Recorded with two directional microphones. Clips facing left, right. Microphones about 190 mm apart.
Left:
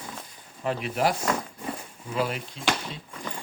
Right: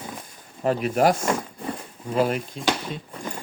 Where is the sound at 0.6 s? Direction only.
45° right (ahead or behind).